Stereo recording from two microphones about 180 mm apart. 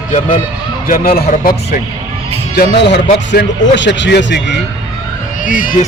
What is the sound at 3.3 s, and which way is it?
Speech, 85° left.